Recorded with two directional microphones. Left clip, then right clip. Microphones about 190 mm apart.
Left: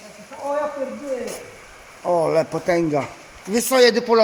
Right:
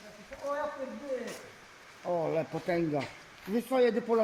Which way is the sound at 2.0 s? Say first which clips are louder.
Left 13 dB; 15° left (ahead or behind).